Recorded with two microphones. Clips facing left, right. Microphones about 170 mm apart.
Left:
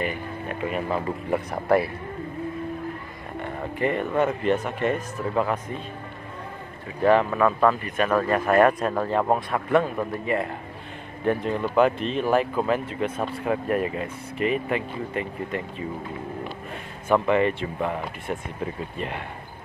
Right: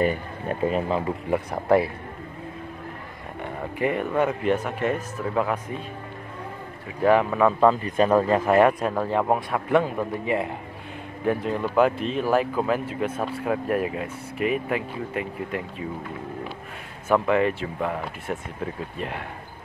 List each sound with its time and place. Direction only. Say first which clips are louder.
0.0 s speech: right 5 dB; 40° right (ahead or behind)
0.8 s speech: right 1 dB; 15° right (ahead or behind)
3.7 s speech: even; 10° right (ahead or behind)
7.0 s speech: even; 10° right (ahead or behind)
7.8 s speech: right 3 dB; 25° right (ahead or behind); by 15.6 s 5° right (ahead or behind)
17.1 s speech: even; 5° right (ahead or behind)